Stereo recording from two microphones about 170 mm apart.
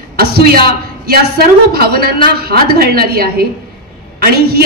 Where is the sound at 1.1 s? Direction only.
65° right (ahead or behind).